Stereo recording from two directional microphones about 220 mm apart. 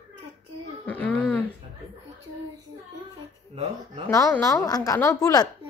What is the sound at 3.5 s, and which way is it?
Speech, 25° right (ahead or behind).